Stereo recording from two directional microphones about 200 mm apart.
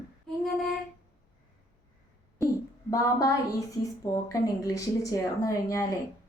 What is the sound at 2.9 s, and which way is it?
A woman's voice, 15° left (ahead or behind).